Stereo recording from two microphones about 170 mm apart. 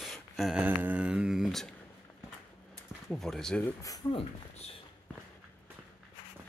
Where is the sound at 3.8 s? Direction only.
20° left (ahead or behind).